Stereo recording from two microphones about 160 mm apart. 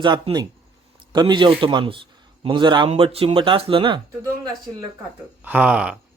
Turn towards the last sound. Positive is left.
turn(degrees=-5)  # may be behind; listen again after turning